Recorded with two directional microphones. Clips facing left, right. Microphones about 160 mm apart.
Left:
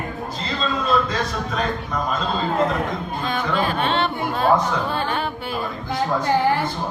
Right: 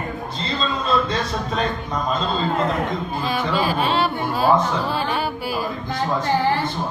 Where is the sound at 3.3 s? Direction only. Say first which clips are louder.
Right 1 dB; 5° right (ahead or behind).